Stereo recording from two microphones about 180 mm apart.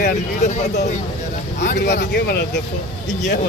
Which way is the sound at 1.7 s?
70° left (ahead or behind).